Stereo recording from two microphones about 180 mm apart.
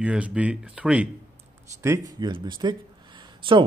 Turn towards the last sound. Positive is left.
turn(degrees=-25)  # may be behind; listen again after turning